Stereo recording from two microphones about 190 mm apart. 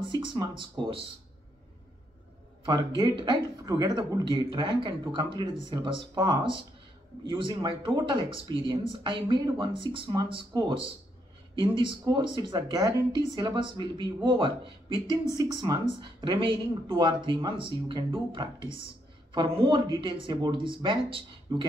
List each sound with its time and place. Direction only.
0.0 s speech: 25° right (ahead or behind)
2.6 s speech: 25° right (ahead or behind)